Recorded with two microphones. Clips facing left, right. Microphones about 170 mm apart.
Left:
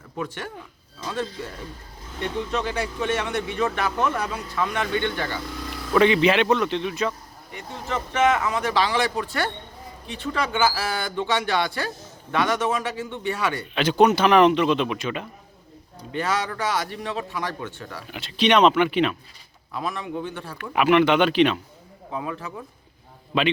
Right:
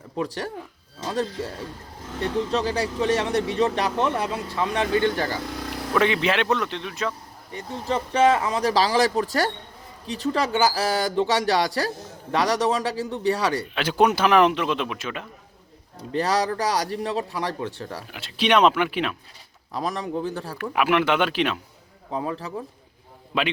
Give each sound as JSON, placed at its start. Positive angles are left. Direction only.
{"t": 0.2, "sound": "speech", "side_deg": -35}
{"t": 5.9, "sound": "a man's voice", "side_deg": 0}
{"t": 7.5, "sound": "speech", "side_deg": -35}
{"t": 13.7, "sound": "a man's voice", "side_deg": -5}
{"t": 16.1, "sound": "speech", "side_deg": -35}
{"t": 18.1, "sound": "a man's voice", "side_deg": -5}
{"t": 19.7, "sound": "speech", "side_deg": -40}
{"t": 20.6, "sound": "a man's voice", "side_deg": -5}
{"t": 22.1, "sound": "speech", "side_deg": -35}